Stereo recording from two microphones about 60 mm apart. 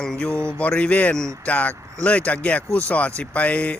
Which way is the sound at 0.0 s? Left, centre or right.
Centre.